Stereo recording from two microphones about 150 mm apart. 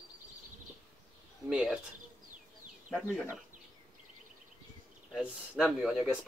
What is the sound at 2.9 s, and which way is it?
Speech, centre (ahead or behind).